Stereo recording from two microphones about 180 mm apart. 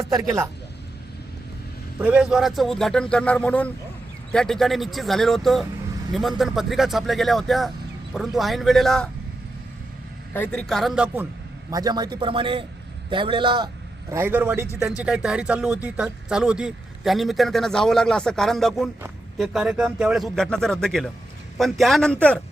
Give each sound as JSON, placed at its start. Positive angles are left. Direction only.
{"t": 0.0, "sound": "a man's voice", "side_deg": -20}
{"t": 2.0, "sound": "speech", "side_deg": -5}
{"t": 10.3, "sound": "speech", "side_deg": 5}
{"t": 11.7, "sound": "a man's voice", "side_deg": -20}
{"t": 14.1, "sound": "a man's voice", "side_deg": -10}